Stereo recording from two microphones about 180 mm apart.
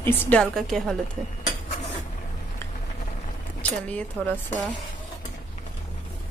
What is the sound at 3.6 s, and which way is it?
Speech, 10° left (ahead or behind).